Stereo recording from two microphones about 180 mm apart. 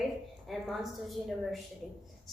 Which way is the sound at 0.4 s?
Centre (ahead or behind).